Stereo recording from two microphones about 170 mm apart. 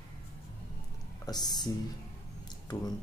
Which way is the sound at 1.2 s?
25° left (ahead or behind).